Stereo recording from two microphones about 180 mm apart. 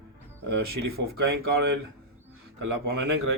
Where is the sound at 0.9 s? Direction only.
60° right (ahead or behind).